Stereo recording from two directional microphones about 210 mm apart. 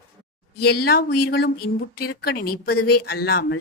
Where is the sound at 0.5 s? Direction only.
50° left (ahead or behind).